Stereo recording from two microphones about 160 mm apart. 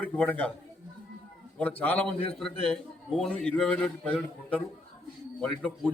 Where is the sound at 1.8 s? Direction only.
10° left (ahead or behind).